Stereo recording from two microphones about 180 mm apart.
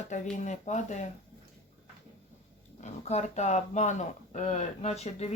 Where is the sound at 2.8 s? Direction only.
40° left (ahead or behind).